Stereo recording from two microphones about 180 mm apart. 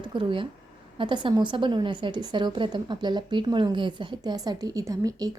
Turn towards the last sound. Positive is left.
turn(degrees=-20)  # may be behind; listen again after turning